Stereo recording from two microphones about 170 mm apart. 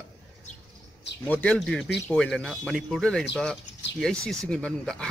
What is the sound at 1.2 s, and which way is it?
Speech, 10° left (ahead or behind).